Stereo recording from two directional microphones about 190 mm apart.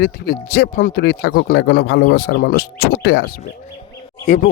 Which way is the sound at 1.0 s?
60° left (ahead or behind).